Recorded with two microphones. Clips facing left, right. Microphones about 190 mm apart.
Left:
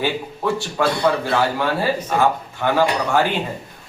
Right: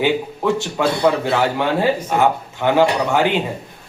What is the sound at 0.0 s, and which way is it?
A man's voice, 20° right (ahead or behind).